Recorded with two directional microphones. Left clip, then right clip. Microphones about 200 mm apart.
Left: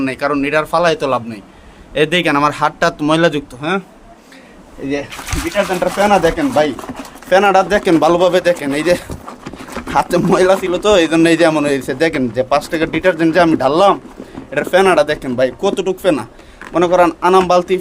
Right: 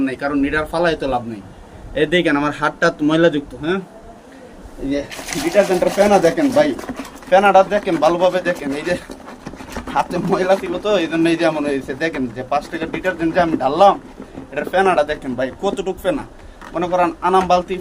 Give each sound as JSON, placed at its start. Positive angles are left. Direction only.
{"t": 0.0, "sound": "speech", "side_deg": 55}
{"t": 5.6, "sound": "speech", "side_deg": 30}
{"t": 16.7, "sound": "speech", "side_deg": 60}